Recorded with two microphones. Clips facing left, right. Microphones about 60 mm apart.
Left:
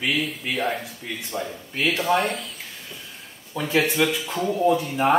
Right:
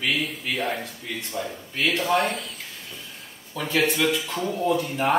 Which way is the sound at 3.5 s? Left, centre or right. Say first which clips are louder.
Left 2 dB; left.